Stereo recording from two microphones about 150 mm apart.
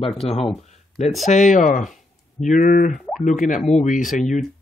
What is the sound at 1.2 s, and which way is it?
Speech, 55° left (ahead or behind).